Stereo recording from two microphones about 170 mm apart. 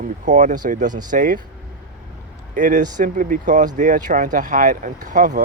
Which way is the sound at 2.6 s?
45° right (ahead or behind).